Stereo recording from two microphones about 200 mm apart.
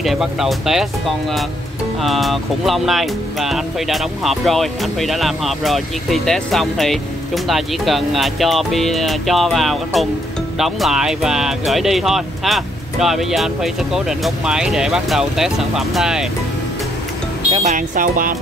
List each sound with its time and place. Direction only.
0.0 s speech: centre (ahead or behind)
17.5 s speech: 30° right (ahead or behind)